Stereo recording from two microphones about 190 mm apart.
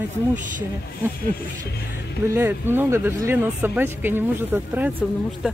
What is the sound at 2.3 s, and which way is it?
Speech, 10° right (ahead or behind).